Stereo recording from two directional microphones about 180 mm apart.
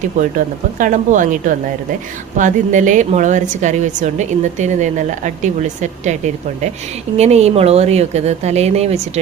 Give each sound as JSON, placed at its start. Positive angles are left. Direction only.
{"t": 0.2, "sound": "a woman's voice", "side_deg": -50}